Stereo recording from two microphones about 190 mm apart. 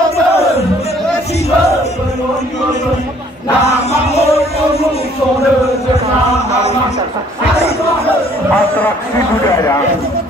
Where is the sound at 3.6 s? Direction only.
35° left (ahead or behind).